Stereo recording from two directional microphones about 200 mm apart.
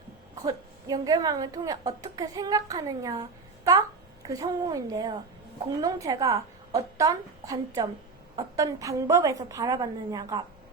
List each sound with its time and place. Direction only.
0.4 s a woman's voice: 20° right (ahead or behind)
4.3 s a woman's voice: 20° right (ahead or behind)